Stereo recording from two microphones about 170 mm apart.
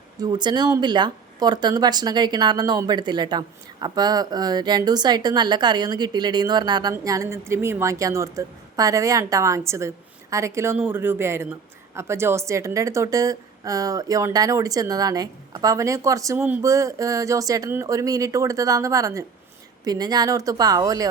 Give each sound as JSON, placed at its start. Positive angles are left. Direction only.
{"t": 0.2, "sound": "a woman's voice", "side_deg": -25}